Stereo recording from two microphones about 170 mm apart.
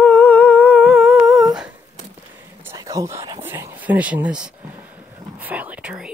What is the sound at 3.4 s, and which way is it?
Speech, 15° right (ahead or behind).